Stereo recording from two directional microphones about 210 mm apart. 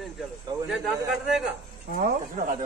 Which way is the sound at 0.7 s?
Centre (ahead or behind).